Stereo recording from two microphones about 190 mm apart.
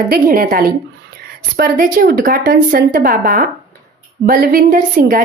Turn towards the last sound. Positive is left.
turn(degrees=-45)  # may be behind; listen again after turning